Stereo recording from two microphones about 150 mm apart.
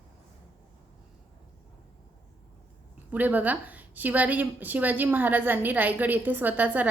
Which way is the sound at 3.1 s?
10° right (ahead or behind).